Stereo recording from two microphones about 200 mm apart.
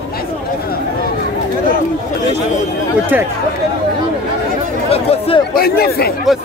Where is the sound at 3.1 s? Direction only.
10° right (ahead or behind).